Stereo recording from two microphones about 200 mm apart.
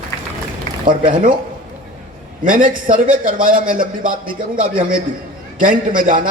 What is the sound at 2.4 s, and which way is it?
A man's voice, 40° right (ahead or behind).